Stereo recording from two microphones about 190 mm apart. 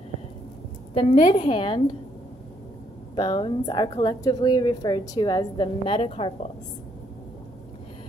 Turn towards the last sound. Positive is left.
turn(degrees=30)  # may be behind; listen again after turning